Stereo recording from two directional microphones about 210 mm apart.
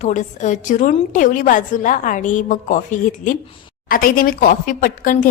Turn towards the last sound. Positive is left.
turn(degrees=40)  # may be behind; listen again after turning